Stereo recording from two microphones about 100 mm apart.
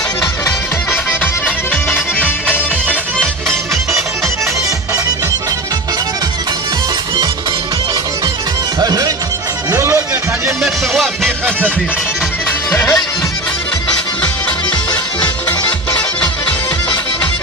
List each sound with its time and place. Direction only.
1.7 s music: 20° left (ahead or behind)
8.8 s music: 40° right (ahead or behind)
9.7 s music: 30° right (ahead or behind)
10.6 s music: centre (ahead or behind)
12.5 s music: 20° left (ahead or behind)
15.2 s music: 20° left (ahead or behind)